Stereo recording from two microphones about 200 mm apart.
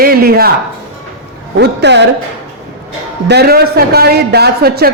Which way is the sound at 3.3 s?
50° right (ahead or behind).